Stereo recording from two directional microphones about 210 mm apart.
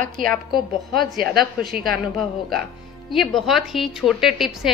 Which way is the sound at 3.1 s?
Centre (ahead or behind).